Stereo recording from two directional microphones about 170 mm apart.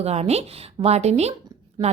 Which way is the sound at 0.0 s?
40° right (ahead or behind).